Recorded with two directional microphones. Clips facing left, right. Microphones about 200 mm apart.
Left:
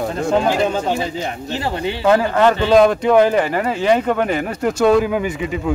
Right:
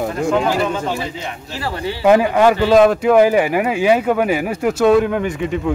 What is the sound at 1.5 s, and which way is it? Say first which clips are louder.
Speech: left 1 dB; 20° left (ahead or behind).